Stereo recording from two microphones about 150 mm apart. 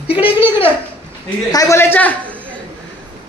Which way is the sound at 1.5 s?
20° left (ahead or behind).